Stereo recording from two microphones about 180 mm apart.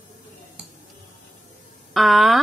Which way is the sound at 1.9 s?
Centre (ahead or behind).